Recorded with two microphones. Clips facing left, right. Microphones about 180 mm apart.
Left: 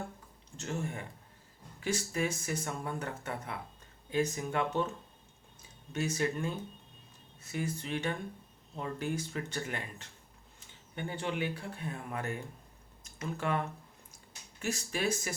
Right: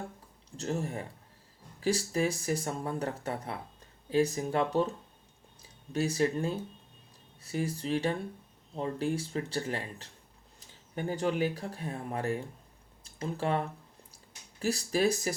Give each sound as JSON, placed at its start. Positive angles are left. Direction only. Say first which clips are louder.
{"t": 0.5, "sound": "speech", "louder": "right 4 dB", "side_deg": -35}